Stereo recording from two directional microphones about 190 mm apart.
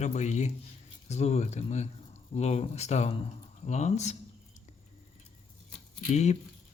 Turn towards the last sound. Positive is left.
turn(degrees=35)  # may be behind; listen again after turning